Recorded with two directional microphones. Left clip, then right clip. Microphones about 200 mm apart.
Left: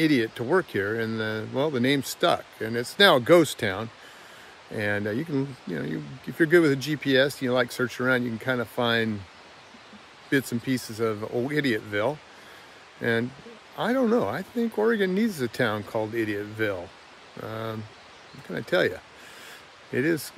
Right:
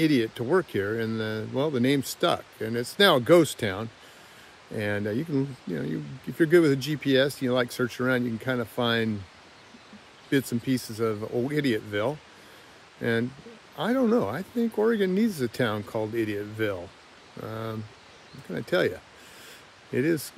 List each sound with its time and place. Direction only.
0.0 s speech: 10° left (ahead or behind)
10.6 s speech: 10° left (ahead or behind)